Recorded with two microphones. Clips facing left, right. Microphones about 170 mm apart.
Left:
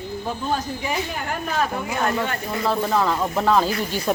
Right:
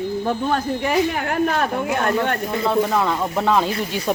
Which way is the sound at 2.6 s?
Centre (ahead or behind).